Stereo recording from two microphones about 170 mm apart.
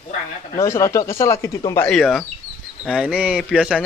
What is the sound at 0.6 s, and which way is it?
Speech, 15° left (ahead or behind).